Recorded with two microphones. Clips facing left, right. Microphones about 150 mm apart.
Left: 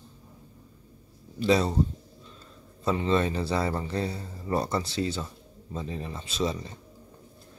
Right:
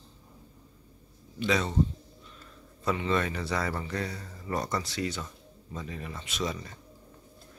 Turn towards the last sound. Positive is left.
turn(degrees=30)  # may be behind; listen again after turning